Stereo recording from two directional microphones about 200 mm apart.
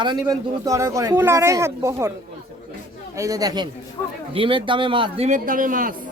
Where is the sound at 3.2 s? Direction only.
15° right (ahead or behind); by 5.9 s 45° right (ahead or behind).